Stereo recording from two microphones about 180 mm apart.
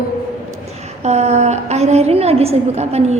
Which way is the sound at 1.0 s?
40° right (ahead or behind).